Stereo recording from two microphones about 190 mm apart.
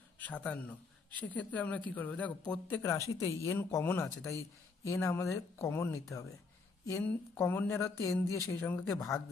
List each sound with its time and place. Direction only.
0.2 s speech: 10° left (ahead or behind)